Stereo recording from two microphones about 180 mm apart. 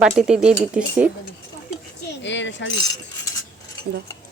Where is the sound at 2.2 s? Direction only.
90° left.